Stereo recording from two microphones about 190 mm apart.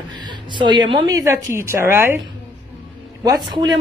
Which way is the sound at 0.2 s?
25° right (ahead or behind).